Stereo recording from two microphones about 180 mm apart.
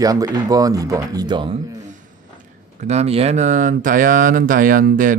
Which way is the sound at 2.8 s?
35° right (ahead or behind).